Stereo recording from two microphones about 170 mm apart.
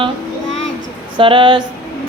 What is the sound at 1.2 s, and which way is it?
Speech, 30° right (ahead or behind).